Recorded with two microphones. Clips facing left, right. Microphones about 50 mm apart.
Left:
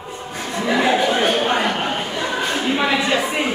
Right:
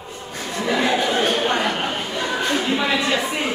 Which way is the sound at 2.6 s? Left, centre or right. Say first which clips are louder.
Left 2 dB; centre.